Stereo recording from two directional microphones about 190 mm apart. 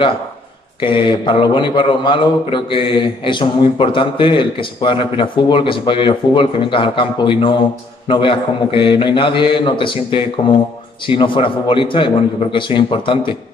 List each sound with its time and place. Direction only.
0.7 s a man's voice: 25° left (ahead or behind)